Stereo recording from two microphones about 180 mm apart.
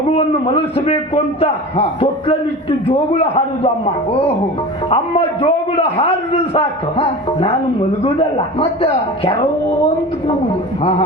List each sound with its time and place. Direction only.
0.1 s a man's voice: 30° left (ahead or behind)
5.4 s a man's voice: 35° left (ahead or behind)